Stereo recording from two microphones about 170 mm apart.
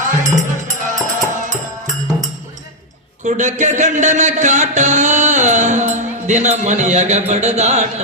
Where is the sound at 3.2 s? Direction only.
45° right (ahead or behind).